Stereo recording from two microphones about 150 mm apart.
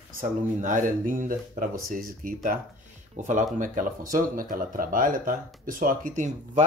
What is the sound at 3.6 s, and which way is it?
Speech, 65° right (ahead or behind).